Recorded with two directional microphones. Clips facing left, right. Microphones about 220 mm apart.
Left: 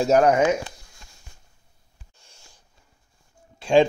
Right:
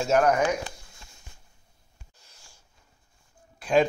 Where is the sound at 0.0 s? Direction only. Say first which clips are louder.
Left 4 dB; 35° left (ahead or behind).